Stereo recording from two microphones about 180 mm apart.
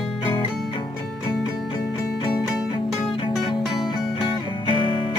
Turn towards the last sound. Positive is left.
turn(degrees=25)  # may be behind; listen again after turning